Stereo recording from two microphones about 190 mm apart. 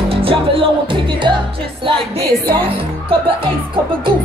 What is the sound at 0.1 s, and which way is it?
Music, 30° right (ahead or behind).